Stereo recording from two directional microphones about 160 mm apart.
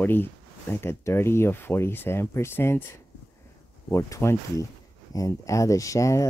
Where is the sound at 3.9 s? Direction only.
15° left (ahead or behind).